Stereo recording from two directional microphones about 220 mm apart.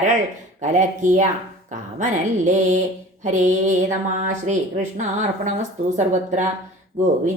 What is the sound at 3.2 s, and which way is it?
Speech, 35° right (ahead or behind).